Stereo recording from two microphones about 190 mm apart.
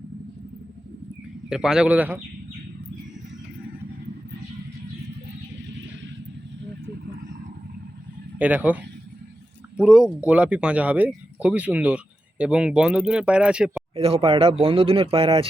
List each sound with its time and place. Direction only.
1.5 s speech: 5° right (ahead or behind)
8.4 s a man's voice: 10° right (ahead or behind)
13.9 s speech: 30° right (ahead or behind)